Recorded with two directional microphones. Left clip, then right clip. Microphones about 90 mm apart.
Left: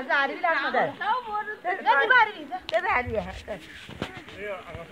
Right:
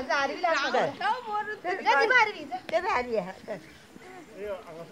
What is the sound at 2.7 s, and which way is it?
Speech, 35° left (ahead or behind).